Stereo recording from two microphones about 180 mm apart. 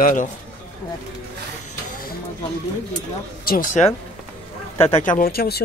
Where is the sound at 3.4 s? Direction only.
50° left (ahead or behind).